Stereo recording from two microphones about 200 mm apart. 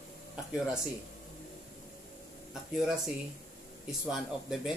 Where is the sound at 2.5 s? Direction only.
Centre (ahead or behind).